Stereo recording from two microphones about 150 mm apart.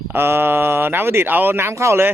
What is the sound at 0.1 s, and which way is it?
Speech, 15° right (ahead or behind).